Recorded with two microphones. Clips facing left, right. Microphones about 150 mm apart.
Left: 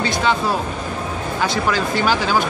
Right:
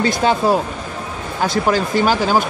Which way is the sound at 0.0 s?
45° right (ahead or behind).